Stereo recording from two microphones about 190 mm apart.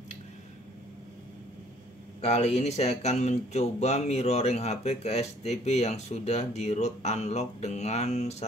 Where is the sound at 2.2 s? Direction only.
35° left (ahead or behind).